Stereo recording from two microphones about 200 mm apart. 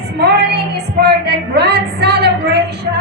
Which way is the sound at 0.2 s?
55° right (ahead or behind).